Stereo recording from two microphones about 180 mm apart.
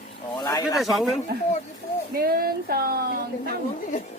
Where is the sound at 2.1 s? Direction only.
55° right (ahead or behind).